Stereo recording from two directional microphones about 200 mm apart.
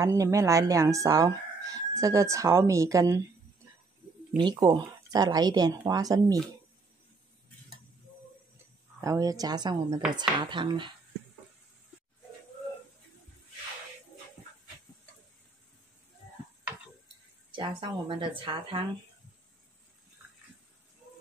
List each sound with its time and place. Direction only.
0.0 s speech: 15° right (ahead or behind)
4.4 s speech: 20° right (ahead or behind)
9.0 s speech: 15° right (ahead or behind)
17.5 s speech: 25° right (ahead or behind)